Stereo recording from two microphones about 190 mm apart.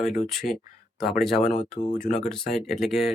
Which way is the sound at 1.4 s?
40° left (ahead or behind).